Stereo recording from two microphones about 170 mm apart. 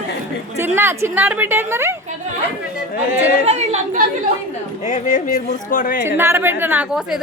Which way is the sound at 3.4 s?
40° right (ahead or behind).